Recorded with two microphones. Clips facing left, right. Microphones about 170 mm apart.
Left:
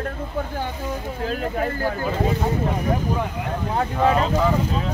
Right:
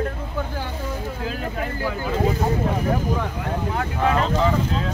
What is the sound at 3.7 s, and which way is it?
Speech, 30° left (ahead or behind).